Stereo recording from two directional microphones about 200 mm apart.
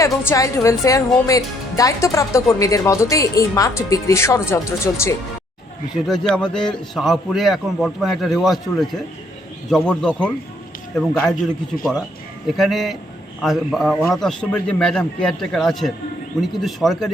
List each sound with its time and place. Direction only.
0.0 s a woman's voice: 15° left (ahead or behind)
6.1 s a man's voice: 5° left (ahead or behind)
12.5 s a man's voice: centre (ahead or behind)